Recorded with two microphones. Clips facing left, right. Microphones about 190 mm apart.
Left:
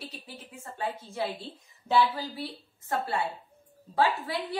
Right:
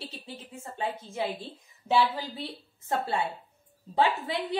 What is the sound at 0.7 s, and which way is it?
A woman's voice, 20° right (ahead or behind).